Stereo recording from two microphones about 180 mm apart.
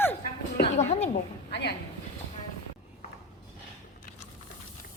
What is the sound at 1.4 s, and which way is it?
Speech, 65° left (ahead or behind).